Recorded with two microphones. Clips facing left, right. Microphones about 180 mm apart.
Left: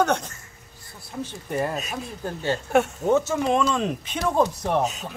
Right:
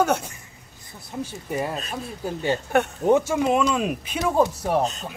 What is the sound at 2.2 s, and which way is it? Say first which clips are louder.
Speech: right 2 dB; 15° right (ahead or behind).